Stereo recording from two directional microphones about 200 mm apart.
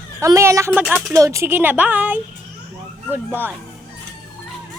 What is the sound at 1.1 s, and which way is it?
Speech, 15° right (ahead or behind).